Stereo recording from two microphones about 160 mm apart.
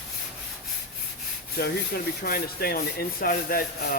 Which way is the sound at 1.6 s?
70° left (ahead or behind).